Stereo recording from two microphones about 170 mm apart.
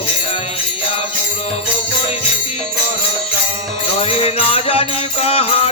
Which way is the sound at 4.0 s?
35° left (ahead or behind).